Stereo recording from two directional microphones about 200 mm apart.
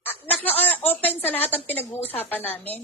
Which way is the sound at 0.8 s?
10° left (ahead or behind).